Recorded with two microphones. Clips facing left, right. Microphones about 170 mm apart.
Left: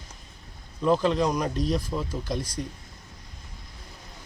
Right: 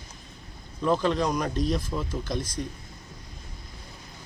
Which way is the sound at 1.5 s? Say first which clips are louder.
Even; 35° left (ahead or behind).